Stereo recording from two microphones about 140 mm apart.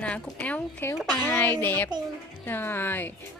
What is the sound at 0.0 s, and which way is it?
Speech, 10° left (ahead or behind).